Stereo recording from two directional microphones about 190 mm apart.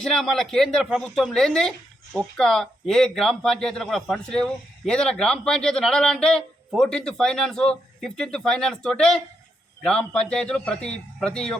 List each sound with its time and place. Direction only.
0.0 s speech: 5° left (ahead or behind)